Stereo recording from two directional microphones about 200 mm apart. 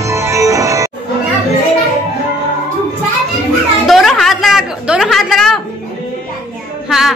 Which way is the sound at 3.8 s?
Centre (ahead or behind).